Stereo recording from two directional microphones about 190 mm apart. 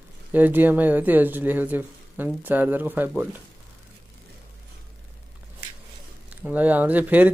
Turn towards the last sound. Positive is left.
turn(degrees=-10)  # may be behind; listen again after turning